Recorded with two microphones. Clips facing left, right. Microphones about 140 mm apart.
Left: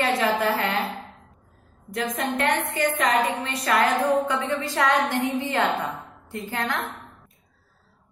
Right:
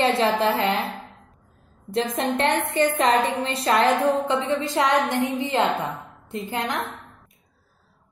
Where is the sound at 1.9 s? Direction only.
25° right (ahead or behind).